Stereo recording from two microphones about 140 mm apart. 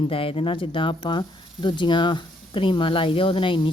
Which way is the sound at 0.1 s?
40° left (ahead or behind).